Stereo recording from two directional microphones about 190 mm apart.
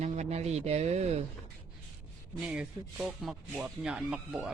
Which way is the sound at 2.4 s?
5° right (ahead or behind).